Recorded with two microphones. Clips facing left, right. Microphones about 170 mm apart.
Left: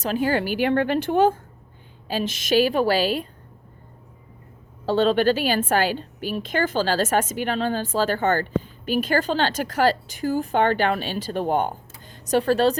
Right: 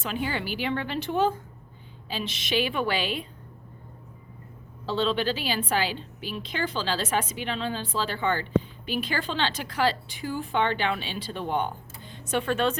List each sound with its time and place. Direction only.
0.0 s a woman's voice: 40° left (ahead or behind)
4.9 s a woman's voice: 50° left (ahead or behind)